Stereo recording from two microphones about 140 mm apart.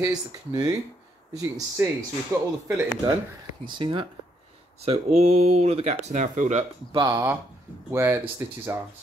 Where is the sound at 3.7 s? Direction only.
35° right (ahead or behind).